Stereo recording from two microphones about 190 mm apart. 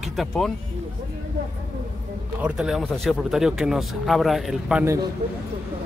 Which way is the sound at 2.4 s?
5° right (ahead or behind).